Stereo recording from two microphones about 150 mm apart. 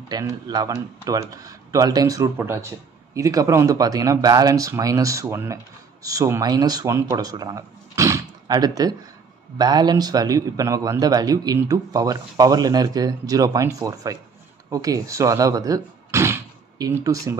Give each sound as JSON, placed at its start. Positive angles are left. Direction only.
{"t": 0.1, "sound": "a man's voice", "side_deg": -25}